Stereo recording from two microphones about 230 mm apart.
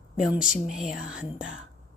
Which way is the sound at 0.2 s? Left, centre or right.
Centre.